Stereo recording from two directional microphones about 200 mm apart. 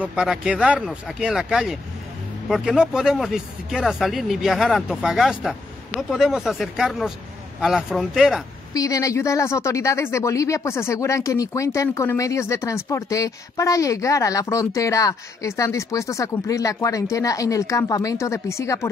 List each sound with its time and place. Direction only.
0.0 s speech: 5° right (ahead or behind)
8.7 s speech: 15° left (ahead or behind)